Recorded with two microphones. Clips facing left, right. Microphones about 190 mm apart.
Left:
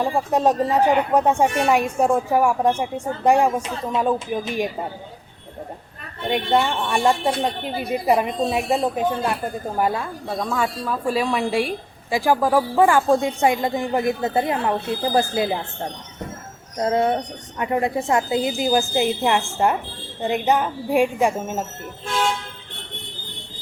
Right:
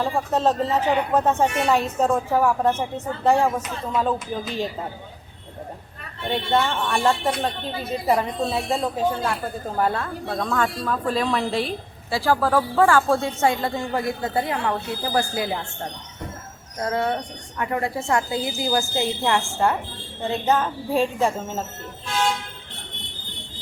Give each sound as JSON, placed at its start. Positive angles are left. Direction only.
{"t": 0.0, "sound": "speech", "side_deg": 15}
{"t": 6.2, "sound": "speech", "side_deg": 15}
{"t": 16.7, "sound": "a woman's voice", "side_deg": 25}